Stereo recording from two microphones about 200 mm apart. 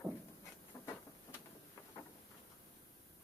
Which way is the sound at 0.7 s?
20° left (ahead or behind).